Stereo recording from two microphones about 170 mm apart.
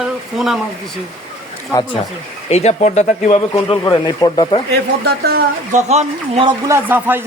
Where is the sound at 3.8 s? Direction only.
25° left (ahead or behind).